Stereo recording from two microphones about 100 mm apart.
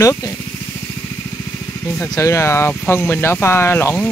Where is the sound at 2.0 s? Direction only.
30° left (ahead or behind).